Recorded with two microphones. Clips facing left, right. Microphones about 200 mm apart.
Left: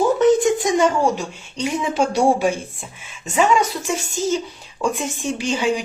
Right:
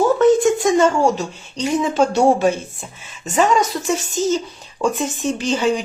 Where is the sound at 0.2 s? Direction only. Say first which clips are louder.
Right 2 dB; 20° left (ahead or behind).